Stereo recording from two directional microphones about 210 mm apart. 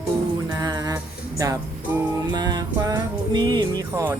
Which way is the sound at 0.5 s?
20° right (ahead or behind).